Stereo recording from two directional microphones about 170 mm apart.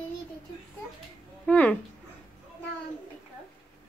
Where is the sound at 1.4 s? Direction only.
5° left (ahead or behind).